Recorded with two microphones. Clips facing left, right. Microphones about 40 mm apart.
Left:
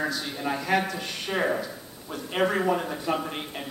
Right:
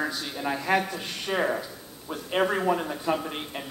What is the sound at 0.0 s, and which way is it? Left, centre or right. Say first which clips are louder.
Speech: left 1 dB; centre.